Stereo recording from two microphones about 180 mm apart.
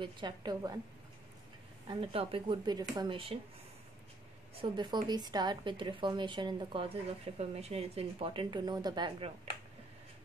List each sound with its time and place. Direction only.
0.0 s a woman's voice: 25° right (ahead or behind)
1.9 s a woman's voice: 30° right (ahead or behind)
4.6 s a woman's voice: 25° right (ahead or behind)